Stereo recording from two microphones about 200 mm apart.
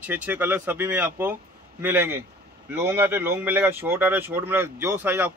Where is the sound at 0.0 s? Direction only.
10° right (ahead or behind).